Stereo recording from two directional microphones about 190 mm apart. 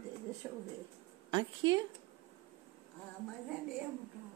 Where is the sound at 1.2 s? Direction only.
25° right (ahead or behind).